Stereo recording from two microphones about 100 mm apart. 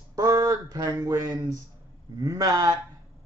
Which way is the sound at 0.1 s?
40° right (ahead or behind).